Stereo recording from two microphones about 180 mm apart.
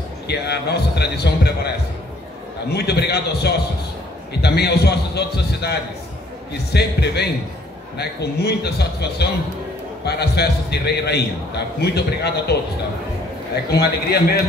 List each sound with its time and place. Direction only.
0.3 s a man's voice: 65° left (ahead or behind)
2.7 s a man's voice: 65° left (ahead or behind)
13.7 s a man's voice: 65° left (ahead or behind)